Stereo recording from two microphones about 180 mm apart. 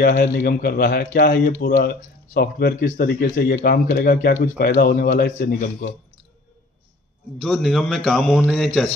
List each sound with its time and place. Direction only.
0.0 s speech: 50° left (ahead or behind)
7.3 s a man's voice: centre (ahead or behind)